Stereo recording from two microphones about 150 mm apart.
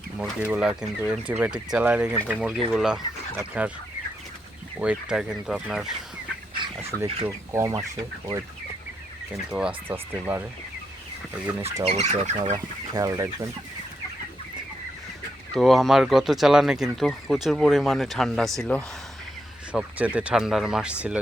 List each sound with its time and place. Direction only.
0.2 s speech: 10° right (ahead or behind)
4.8 s speech: 5° right (ahead or behind)
7.3 s speech: 20° right (ahead or behind)
9.5 s speech: 5° right (ahead or behind)
11.9 s speech: 45° right (ahead or behind)
12.5 s speech: 25° right (ahead or behind)
15.5 s speech: centre (ahead or behind)